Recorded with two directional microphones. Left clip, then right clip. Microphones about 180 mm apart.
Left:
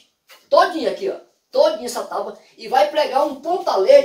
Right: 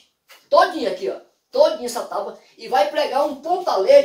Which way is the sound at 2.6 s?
Centre (ahead or behind).